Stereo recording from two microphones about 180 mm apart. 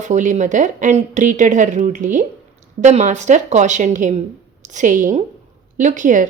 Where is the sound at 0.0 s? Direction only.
45° right (ahead or behind).